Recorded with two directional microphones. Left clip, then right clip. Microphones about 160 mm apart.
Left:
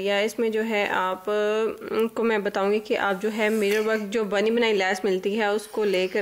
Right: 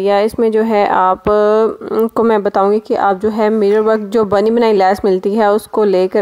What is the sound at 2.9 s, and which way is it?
Speech, 20° right (ahead or behind).